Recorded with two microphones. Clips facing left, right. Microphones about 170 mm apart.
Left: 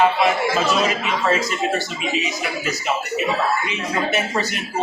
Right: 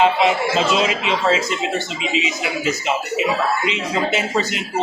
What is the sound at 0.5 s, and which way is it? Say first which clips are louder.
Speech: right 1 dB; 20° right (ahead or behind).